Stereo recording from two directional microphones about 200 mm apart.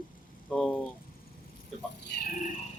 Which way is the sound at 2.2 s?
40° left (ahead or behind).